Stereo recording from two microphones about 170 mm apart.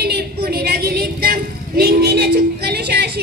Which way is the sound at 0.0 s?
70° right (ahead or behind).